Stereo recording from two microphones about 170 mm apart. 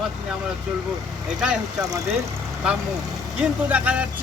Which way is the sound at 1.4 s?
5° right (ahead or behind).